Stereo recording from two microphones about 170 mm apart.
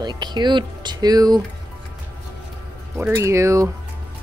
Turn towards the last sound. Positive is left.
turn(degrees=-15)  # may be behind; listen again after turning